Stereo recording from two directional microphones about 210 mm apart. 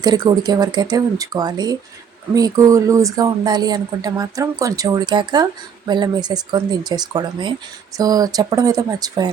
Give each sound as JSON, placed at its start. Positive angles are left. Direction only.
{"t": 0.3, "sound": "speech", "side_deg": -20}